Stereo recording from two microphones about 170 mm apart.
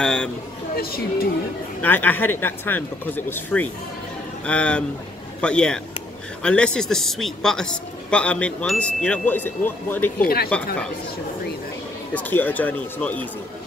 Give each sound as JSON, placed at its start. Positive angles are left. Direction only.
{"t": 0.0, "sound": "speech", "side_deg": 5}
{"t": 0.7, "sound": "speech", "side_deg": 65}
{"t": 1.8, "sound": "a man's voice", "side_deg": 10}
{"t": 10.2, "sound": "speech", "side_deg": 65}
{"t": 12.1, "sound": "a man's voice", "side_deg": 10}